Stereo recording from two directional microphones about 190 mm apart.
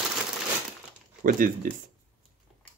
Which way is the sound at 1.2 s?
45° right (ahead or behind).